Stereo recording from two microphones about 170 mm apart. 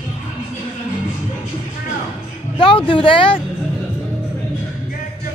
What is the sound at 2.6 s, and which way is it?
Speech, 30° left (ahead or behind).